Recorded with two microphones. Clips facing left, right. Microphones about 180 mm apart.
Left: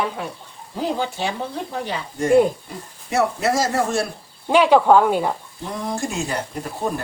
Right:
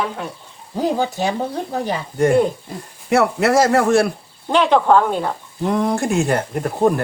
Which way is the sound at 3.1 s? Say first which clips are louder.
Right 5 dB; 65° right (ahead or behind).